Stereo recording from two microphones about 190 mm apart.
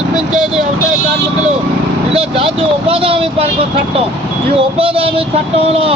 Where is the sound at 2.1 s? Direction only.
30° right (ahead or behind).